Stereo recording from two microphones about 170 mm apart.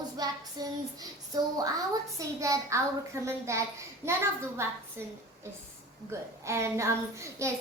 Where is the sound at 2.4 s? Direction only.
15° right (ahead or behind).